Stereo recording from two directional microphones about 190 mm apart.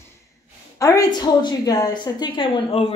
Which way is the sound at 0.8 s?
15° left (ahead or behind).